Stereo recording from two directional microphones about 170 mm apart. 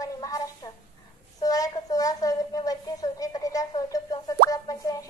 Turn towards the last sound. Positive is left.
turn(degrees=20)  # may be behind; listen again after turning